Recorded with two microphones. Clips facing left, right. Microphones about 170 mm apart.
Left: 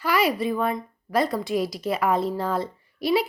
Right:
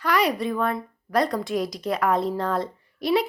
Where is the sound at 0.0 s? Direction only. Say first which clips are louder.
Even; 5° left (ahead or behind).